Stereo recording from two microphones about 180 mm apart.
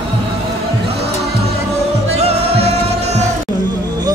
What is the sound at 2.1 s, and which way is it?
Music, 35° right (ahead or behind).